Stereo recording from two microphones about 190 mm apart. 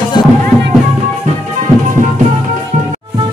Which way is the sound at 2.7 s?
40° right (ahead or behind).